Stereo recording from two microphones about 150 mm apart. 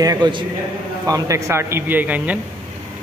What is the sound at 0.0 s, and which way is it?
Speech, 25° right (ahead or behind).